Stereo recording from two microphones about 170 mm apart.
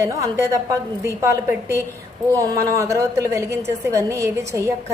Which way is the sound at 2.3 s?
20° right (ahead or behind).